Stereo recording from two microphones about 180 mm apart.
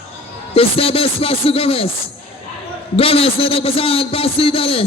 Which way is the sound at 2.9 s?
30° left (ahead or behind).